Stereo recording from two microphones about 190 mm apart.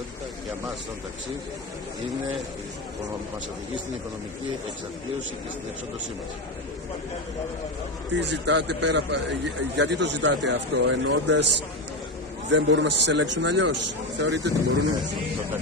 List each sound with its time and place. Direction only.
8.2 s speech: 65° right (ahead or behind)
12.4 s speech: 70° right (ahead or behind)